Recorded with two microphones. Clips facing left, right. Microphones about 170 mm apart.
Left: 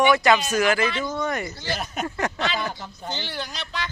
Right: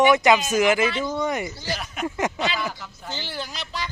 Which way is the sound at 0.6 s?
15° right (ahead or behind).